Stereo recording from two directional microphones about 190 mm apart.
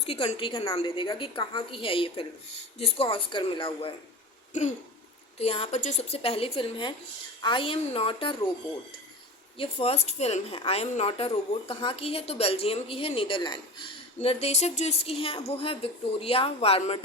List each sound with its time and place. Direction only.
0.0 s a woman's voice: 35° left (ahead or behind)
9.6 s a woman's voice: 30° left (ahead or behind)